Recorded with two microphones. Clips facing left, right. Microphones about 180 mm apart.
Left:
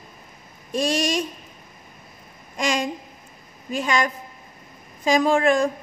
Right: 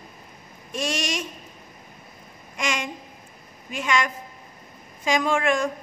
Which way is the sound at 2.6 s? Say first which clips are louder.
Left 5 dB; 35° left (ahead or behind).